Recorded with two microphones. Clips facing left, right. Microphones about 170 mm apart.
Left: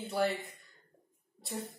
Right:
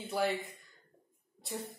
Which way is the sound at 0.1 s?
Centre (ahead or behind).